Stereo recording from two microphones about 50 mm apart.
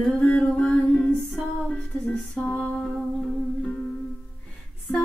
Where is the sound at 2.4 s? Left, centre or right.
Left.